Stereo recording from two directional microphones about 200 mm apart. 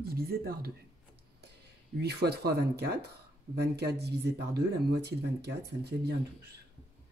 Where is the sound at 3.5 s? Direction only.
55° right (ahead or behind).